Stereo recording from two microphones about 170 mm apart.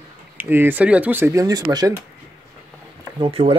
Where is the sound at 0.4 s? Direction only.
10° right (ahead or behind).